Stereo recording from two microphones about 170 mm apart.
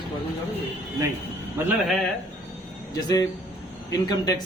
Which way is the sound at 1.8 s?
Centre (ahead or behind).